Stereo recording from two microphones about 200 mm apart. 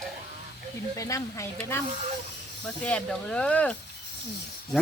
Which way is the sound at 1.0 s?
15° left (ahead or behind).